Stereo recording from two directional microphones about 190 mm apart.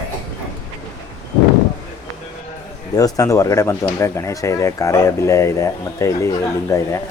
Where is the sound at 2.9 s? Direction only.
15° left (ahead or behind).